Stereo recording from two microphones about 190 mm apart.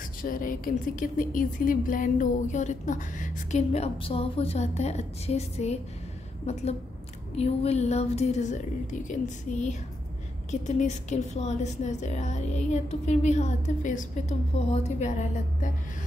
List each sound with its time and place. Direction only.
0.2 s speech: 45° left (ahead or behind)